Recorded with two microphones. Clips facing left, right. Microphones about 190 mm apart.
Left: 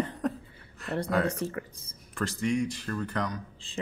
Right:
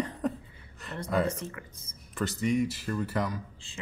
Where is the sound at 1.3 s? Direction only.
35° left (ahead or behind).